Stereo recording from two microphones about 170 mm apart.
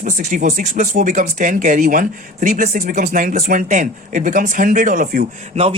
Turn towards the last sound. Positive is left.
turn(degrees=-35)  # may be behind; listen again after turning